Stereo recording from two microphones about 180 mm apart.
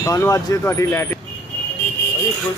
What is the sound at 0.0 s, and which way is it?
Speech, 15° left (ahead or behind).